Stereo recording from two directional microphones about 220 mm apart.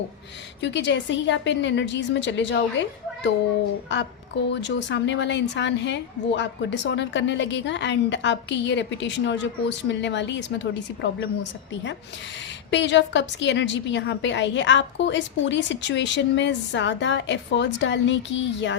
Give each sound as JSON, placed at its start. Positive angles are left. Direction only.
{"t": 0.6, "sound": "a woman's voice", "side_deg": 55}
{"t": 4.4, "sound": "a woman's voice", "side_deg": 55}
{"t": 12.7, "sound": "a woman's voice", "side_deg": 55}